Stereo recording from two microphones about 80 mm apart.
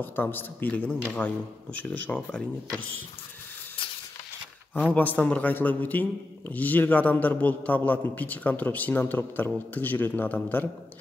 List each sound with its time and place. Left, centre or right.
0.0 s a man's voice: left
4.8 s a man's voice: centre